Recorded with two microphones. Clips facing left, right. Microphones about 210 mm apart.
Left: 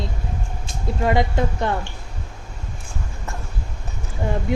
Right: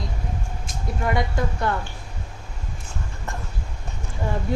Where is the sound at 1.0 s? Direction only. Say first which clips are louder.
Left 4 dB; 25° left (ahead or behind).